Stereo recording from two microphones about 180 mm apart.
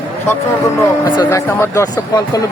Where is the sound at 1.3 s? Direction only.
15° left (ahead or behind).